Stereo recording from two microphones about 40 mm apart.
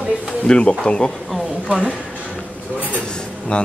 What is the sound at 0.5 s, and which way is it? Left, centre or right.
Speech, left.